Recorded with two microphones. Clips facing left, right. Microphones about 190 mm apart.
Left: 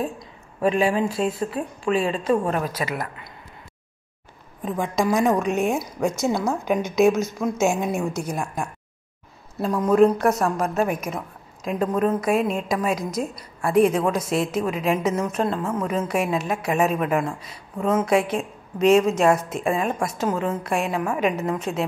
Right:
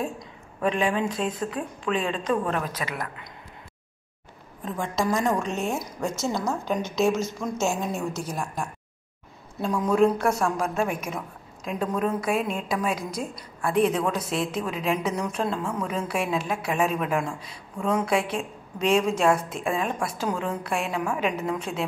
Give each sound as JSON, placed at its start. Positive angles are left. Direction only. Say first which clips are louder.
{"t": 0.6, "sound": "a woman's voice", "louder": "left 4 dB", "side_deg": 5}
{"t": 2.4, "sound": "a woman's voice", "louder": "left 3 dB", "side_deg": 35}
{"t": 2.7, "sound": "a woman's voice", "louder": "left 4 dB", "side_deg": 10}
{"t": 4.6, "sound": "a woman's voice", "louder": "left 4 dB", "side_deg": 15}